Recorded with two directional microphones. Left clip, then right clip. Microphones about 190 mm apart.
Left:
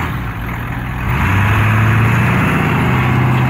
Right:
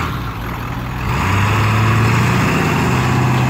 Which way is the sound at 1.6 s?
Centre (ahead or behind).